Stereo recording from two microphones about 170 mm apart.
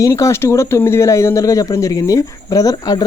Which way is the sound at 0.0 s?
15° left (ahead or behind).